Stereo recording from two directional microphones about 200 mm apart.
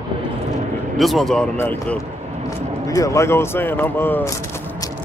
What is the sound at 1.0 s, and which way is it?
Speech, centre (ahead or behind).